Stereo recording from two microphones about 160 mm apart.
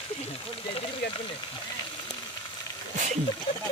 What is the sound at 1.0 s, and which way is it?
Speech, 90° left.